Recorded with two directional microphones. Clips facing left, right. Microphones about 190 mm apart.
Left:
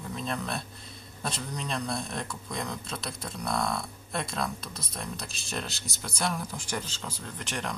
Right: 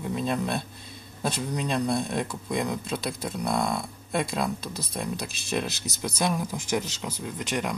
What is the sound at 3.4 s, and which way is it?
Speech, 20° right (ahead or behind).